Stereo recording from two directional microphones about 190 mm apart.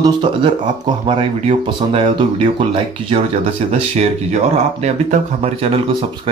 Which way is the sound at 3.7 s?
35° right (ahead or behind).